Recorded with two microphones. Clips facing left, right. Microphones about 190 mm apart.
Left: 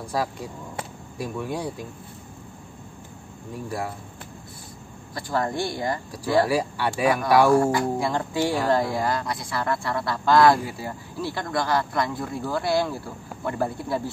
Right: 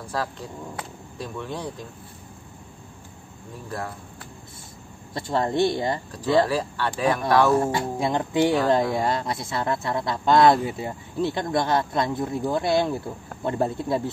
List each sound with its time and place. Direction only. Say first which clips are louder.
0.1 s speech: left 2 dB; 10° left (ahead or behind)
3.6 s speech: left 2 dB; 10° left (ahead or behind)
5.1 s speech: right 2 dB; 25° right (ahead or behind)
6.4 s speech: left 1 dB; 10° left (ahead or behind)
7.5 s speech: left 3 dB; 25° right (ahead or behind)